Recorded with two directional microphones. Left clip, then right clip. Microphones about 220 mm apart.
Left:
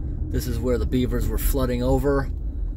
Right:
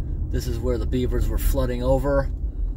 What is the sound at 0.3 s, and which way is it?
Speech, 30° left (ahead or behind).